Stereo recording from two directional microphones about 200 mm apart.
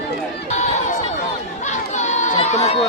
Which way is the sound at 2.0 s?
35° left (ahead or behind).